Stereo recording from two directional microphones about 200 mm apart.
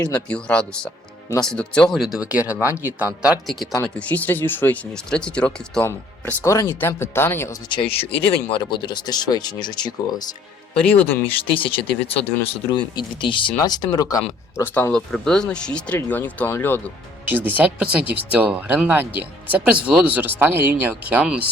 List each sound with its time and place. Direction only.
0.0 s speech: 5° left (ahead or behind)
7.7 s speech: 25° left (ahead or behind)
10.9 s speech: 10° left (ahead or behind)
11.3 s speech: 25° left (ahead or behind); by 16.9 s 10° left (ahead or behind)
17.2 s speech: 10° right (ahead or behind)